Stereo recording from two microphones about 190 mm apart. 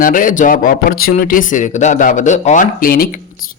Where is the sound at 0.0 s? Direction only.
45° left (ahead or behind).